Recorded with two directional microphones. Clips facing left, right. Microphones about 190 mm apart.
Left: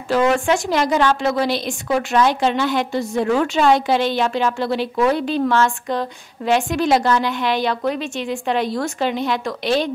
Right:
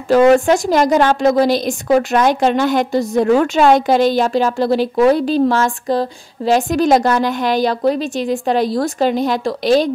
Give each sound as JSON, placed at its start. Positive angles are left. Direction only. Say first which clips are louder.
{"t": 0.1, "sound": "a woman's voice", "louder": "right 7 dB", "side_deg": -40}